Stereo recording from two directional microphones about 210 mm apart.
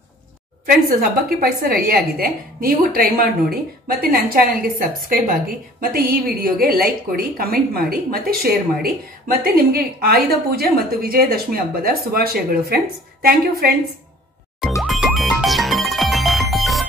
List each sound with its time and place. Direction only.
0.7 s a woman's voice: 45° right (ahead or behind)
14.8 s music: centre (ahead or behind)